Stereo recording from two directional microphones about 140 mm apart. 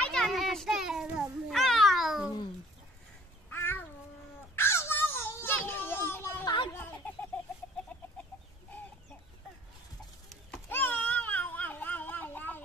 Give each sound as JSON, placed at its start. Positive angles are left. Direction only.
{"t": 0.0, "sound": "children playing", "side_deg": 5}
{"t": 1.5, "sound": "cat", "side_deg": 0}
{"t": 3.4, "sound": "babbling", "side_deg": 15}
{"t": 4.6, "sound": "children playing", "side_deg": 20}
{"t": 6.4, "sound": "a sound", "side_deg": 35}
{"t": 7.0, "sound": "chicken", "side_deg": 10}
{"t": 10.7, "sound": "a sound", "side_deg": 10}